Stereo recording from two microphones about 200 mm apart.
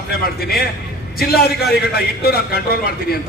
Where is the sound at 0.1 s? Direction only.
50° left (ahead or behind).